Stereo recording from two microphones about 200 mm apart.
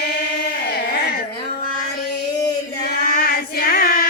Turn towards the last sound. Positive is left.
turn(degrees=45)  # may be behind; listen again after turning